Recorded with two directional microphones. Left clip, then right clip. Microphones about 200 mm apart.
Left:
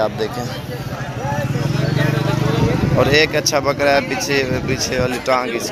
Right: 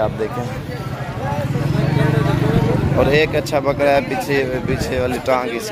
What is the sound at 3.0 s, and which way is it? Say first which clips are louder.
A man's voice: left 1 dB; centre (ahead or behind).